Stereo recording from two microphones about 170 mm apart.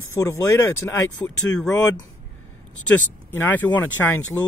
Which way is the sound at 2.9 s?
10° left (ahead or behind).